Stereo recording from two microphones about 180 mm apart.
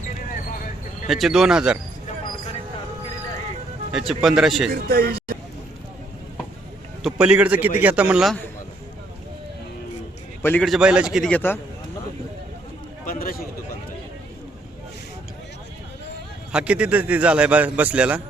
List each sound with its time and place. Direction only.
1.0 s a man's voice: centre (ahead or behind)
3.9 s a man's voice: centre (ahead or behind)
4.7 s speech: 55° right (ahead or behind)
7.0 s a man's voice: 5° right (ahead or behind)
10.4 s a man's voice: 10° left (ahead or behind)
10.7 s a man's voice: 5° right (ahead or behind)
13.1 s speech: 55° left (ahead or behind)
16.5 s a man's voice: 5° right (ahead or behind)